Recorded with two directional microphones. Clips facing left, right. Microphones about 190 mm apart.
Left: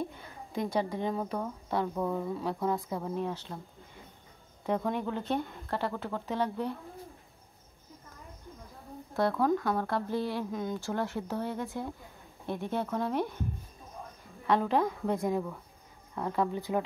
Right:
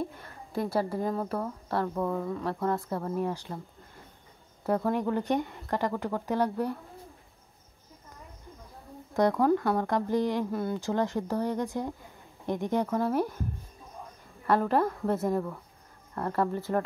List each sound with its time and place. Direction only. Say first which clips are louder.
0.0 s a woman's voice: right 2 dB; centre (ahead or behind)
3.2 s speech: right 3 dB; 10° right (ahead or behind)
4.6 s speech: right 4 dB; 5° right (ahead or behind)
9.1 s speech: right 4 dB; 15° right (ahead or behind)
14.4 s a woman's voice: right 2 dB; centre (ahead or behind)